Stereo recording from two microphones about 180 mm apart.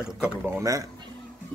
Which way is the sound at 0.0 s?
5° right (ahead or behind).